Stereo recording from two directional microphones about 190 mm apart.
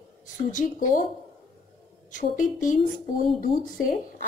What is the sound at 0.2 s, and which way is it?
Speech, 45° left (ahead or behind).